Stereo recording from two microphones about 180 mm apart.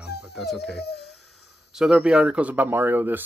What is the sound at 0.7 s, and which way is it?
Speech, 65° left (ahead or behind).